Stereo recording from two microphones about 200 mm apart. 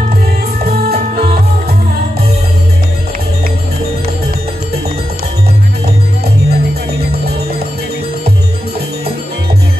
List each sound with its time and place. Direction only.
6.5 s music: 50° right (ahead or behind)